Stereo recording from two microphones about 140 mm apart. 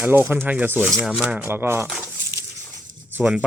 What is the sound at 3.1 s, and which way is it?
Speech, 10° right (ahead or behind).